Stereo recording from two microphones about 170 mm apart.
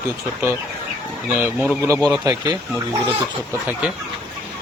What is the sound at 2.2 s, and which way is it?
Speech, 25° right (ahead or behind).